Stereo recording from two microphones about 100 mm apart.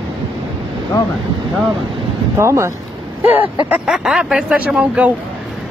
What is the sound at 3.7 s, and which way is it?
Speech, 5° right (ahead or behind).